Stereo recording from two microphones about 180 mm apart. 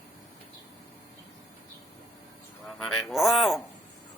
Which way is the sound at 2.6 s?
Centre (ahead or behind).